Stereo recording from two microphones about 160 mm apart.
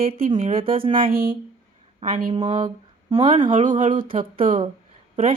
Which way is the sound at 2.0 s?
50° right (ahead or behind).